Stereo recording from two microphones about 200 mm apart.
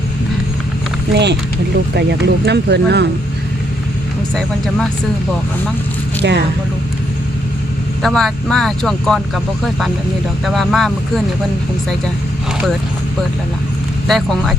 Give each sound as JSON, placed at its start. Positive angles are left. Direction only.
{"t": 1.1, "sound": "speech", "side_deg": -60}
{"t": 4.4, "sound": "speech", "side_deg": 5}
{"t": 6.2, "sound": "speech", "side_deg": -60}
{"t": 8.0, "sound": "speech", "side_deg": 5}
{"t": 10.4, "sound": "speech", "side_deg": 0}
{"t": 14.1, "sound": "speech", "side_deg": 0}